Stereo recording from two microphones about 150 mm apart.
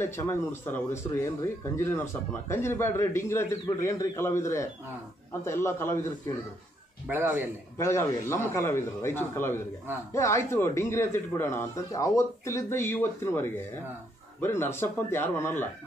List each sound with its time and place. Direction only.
0.0 s a man's voice: 15° left (ahead or behind)
7.1 s a man's voice: 15° right (ahead or behind)
7.7 s speech: 20° left (ahead or behind)